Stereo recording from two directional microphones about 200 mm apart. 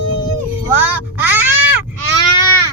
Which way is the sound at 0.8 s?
10° right (ahead or behind).